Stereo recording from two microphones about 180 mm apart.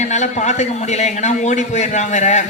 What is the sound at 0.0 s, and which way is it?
A man's voice, 40° left (ahead or behind).